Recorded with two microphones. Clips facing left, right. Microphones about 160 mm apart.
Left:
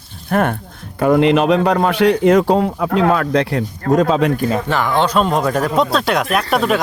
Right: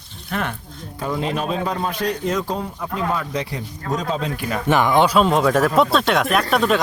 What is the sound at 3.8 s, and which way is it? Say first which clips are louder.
Speech: left 11 dB; 55° left (ahead or behind).